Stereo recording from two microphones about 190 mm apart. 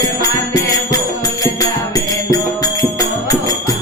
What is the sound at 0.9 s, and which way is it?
Music, 20° left (ahead or behind).